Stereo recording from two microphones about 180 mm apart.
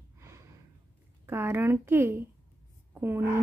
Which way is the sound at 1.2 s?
10° right (ahead or behind).